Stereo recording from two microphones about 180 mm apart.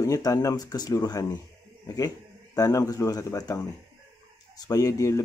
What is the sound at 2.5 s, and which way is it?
Speech, 20° left (ahead or behind).